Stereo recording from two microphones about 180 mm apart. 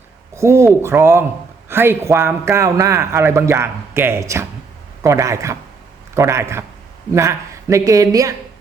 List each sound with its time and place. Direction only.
0.3 s a man's voice: 15° right (ahead or behind)